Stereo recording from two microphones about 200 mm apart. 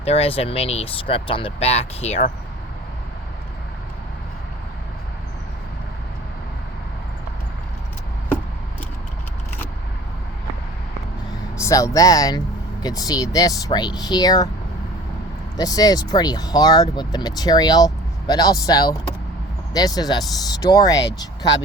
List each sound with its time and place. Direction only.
0.0 s speech: 30° left (ahead or behind)
11.5 s speech: 15° left (ahead or behind)
15.5 s speech: 20° left (ahead or behind)